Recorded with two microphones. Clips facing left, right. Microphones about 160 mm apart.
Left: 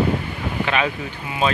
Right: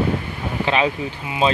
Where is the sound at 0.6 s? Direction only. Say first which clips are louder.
Right 3 dB; 25° right (ahead or behind).